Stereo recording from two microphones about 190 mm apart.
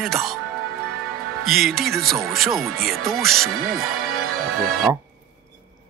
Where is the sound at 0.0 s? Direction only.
Centre (ahead or behind).